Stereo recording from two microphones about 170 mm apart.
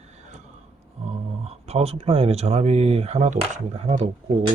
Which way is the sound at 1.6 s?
40° right (ahead or behind).